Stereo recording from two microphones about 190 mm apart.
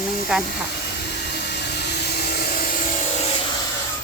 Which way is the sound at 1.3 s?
60° left (ahead or behind).